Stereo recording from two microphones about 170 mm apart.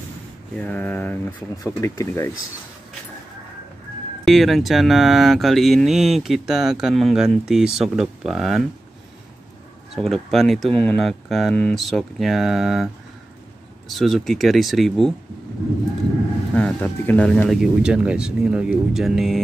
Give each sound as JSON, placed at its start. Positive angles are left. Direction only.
{"t": 0.6, "sound": "speech", "side_deg": 10}
{"t": 4.2, "sound": "speech", "side_deg": 0}
{"t": 9.9, "sound": "speech", "side_deg": 0}
{"t": 16.5, "sound": "speech", "side_deg": 10}